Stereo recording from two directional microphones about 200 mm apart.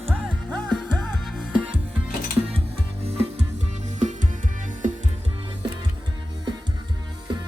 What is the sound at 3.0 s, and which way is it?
Music, 30° right (ahead or behind).